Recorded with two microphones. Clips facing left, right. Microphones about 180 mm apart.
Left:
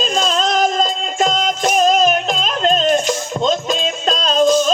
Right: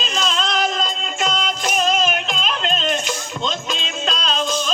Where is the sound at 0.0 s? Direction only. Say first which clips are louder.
Left 6 dB; 40° left (ahead or behind).